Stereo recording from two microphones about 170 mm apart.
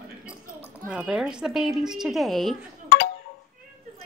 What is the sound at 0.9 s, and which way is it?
A woman's voice, 5° right (ahead or behind).